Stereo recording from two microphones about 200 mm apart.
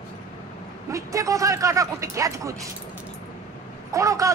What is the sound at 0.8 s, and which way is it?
Speech, 15° right (ahead or behind).